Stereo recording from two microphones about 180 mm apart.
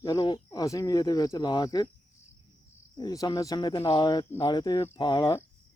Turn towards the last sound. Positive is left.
turn(degrees=20)  # may be behind; listen again after turning